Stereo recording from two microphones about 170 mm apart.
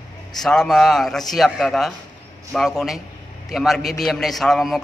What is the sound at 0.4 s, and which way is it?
A man's voice, 5° left (ahead or behind).